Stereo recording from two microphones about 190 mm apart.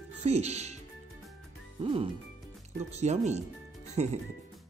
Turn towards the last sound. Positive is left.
turn(degrees=-35)  # may be behind; listen again after turning